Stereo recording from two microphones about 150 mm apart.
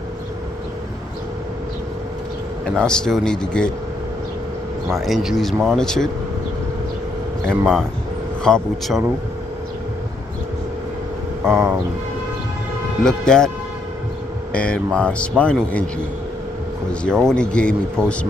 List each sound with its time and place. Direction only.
2.6 s speech: 5° left (ahead or behind)
4.9 s speech: centre (ahead or behind)
7.4 s speech: 5° left (ahead or behind)
11.4 s speech: 15° right (ahead or behind)
13.0 s speech: 5° left (ahead or behind)
14.5 s speech: 5° left (ahead or behind)
16.9 s speech: 5° left (ahead or behind)